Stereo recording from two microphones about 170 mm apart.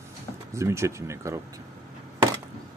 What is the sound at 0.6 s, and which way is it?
Speech, 15° right (ahead or behind).